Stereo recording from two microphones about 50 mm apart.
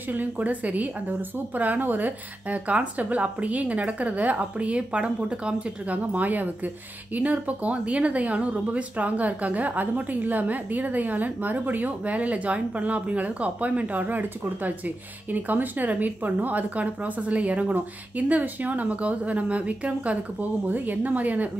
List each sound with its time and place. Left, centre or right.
0.1 s a woman's voice: right